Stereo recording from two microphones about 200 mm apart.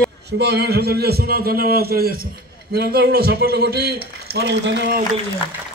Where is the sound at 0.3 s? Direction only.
55° right (ahead or behind).